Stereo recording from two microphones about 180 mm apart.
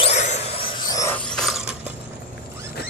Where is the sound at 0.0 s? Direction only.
40° left (ahead or behind).